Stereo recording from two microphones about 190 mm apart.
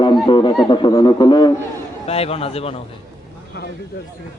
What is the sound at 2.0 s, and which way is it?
Speech, 30° left (ahead or behind).